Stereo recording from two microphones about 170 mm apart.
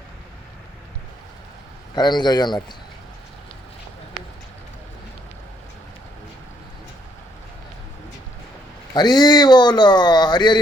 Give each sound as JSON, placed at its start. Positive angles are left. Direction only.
{"t": 2.0, "sound": "speech", "side_deg": 25}
{"t": 8.9, "sound": "speech", "side_deg": 25}